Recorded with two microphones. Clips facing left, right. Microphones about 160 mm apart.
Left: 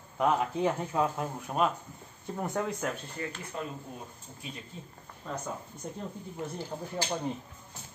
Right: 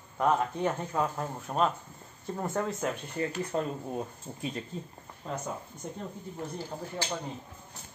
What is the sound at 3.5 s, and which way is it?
Speech, 40° right (ahead or behind).